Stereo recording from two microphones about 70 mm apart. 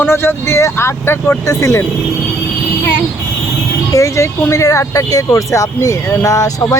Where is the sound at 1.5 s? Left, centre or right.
Left.